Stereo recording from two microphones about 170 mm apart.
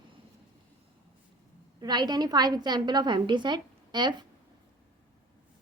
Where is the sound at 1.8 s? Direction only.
25° right (ahead or behind).